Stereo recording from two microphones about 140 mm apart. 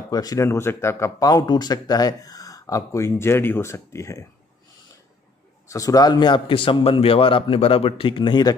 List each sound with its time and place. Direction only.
0.1 s speech: 25° left (ahead or behind)
5.7 s a man's voice: 25° left (ahead or behind)